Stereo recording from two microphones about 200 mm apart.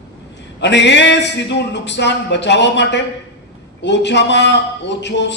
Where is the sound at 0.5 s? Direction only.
60° left (ahead or behind).